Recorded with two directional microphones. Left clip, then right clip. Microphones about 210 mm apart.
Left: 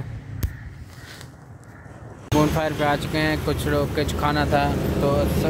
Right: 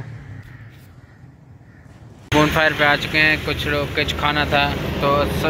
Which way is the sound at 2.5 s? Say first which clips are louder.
Right 6 dB; 10° left (ahead or behind).